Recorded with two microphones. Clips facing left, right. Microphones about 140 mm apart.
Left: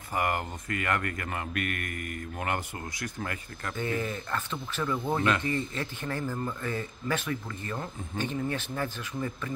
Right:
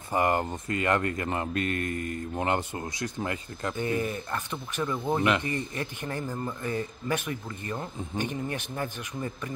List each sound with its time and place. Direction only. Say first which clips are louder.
0.1 s speech: right 4 dB; 25° right (ahead or behind)